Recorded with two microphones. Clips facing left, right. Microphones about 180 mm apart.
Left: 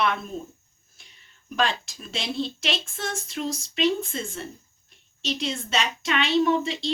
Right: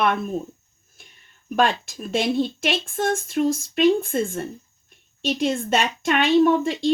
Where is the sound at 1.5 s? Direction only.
50° right (ahead or behind).